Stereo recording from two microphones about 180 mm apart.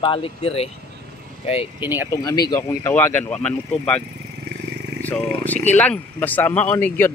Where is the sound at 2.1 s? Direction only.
20° left (ahead or behind).